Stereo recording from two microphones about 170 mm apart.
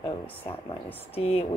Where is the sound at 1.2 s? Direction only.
35° left (ahead or behind).